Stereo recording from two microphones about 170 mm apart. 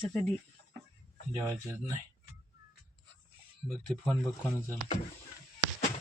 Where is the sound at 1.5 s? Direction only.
15° right (ahead or behind).